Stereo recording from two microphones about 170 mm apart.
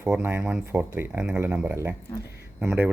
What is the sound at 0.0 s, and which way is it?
Speech, 15° right (ahead or behind).